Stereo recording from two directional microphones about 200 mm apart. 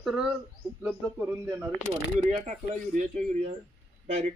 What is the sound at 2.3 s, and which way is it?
Speech, 35° right (ahead or behind).